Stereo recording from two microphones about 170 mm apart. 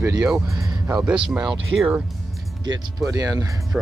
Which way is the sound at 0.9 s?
5° right (ahead or behind).